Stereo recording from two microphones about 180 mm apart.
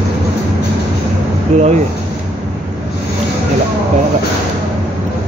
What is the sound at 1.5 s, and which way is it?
Speech, 40° right (ahead or behind).